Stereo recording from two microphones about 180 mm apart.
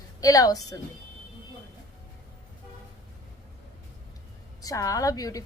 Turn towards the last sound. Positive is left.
turn(degrees=20)  # may be behind; listen again after turning